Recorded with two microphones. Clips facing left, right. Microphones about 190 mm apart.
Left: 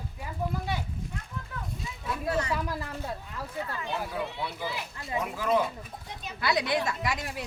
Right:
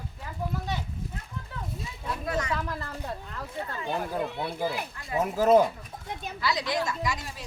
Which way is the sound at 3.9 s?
50° right (ahead or behind).